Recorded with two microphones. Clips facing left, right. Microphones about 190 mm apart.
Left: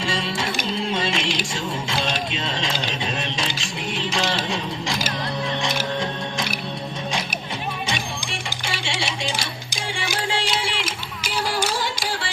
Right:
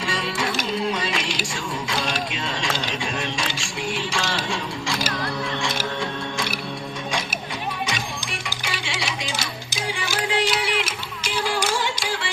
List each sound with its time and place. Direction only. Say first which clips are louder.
0.0 s music: even; 25° left (ahead or behind)
4.4 s a sound: left 1 dB; 20° left (ahead or behind)
5.6 s music: left 2 dB; 20° left (ahead or behind)
7.9 s music: left 1 dB; 25° left (ahead or behind)